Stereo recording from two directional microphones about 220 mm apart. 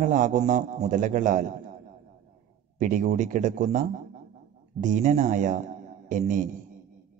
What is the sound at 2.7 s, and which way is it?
Mantra, 35° right (ahead or behind).